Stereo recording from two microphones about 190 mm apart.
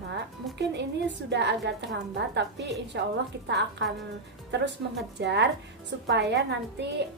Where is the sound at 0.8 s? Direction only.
65° right (ahead or behind).